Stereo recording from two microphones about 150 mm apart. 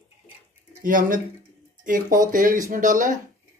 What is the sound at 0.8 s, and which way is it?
Speech, 65° right (ahead or behind).